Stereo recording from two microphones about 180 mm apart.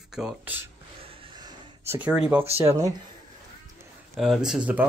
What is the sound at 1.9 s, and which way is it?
Speech, 5° right (ahead or behind).